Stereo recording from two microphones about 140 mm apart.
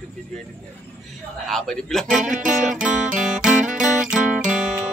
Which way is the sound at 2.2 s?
65° right (ahead or behind).